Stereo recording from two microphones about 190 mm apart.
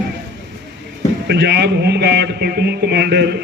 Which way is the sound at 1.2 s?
60° right (ahead or behind).